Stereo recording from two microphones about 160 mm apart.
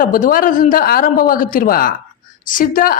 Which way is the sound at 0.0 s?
60° left (ahead or behind).